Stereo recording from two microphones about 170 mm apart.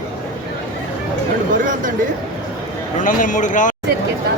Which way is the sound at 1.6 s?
50° right (ahead or behind).